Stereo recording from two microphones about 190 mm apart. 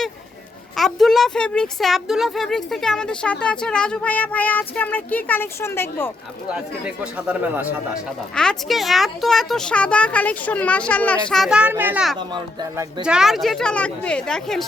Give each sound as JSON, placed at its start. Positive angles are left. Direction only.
{"t": 0.8, "sound": "speech", "side_deg": 0}
{"t": 6.5, "sound": "speech", "side_deg": -5}
{"t": 8.4, "sound": "speech", "side_deg": 0}
{"t": 13.1, "sound": "speech", "side_deg": 0}